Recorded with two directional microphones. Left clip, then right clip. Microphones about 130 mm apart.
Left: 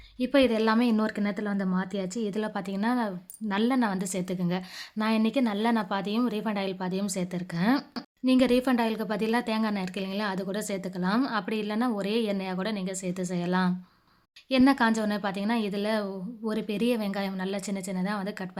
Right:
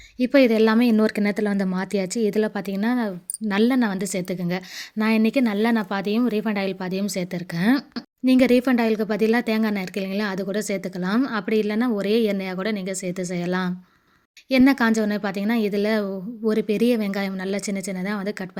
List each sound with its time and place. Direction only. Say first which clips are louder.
0.2 s a woman's voice: right 7 dB; 30° right (ahead or behind)